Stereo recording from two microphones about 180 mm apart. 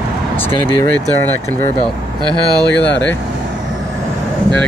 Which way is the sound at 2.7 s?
10° left (ahead or behind).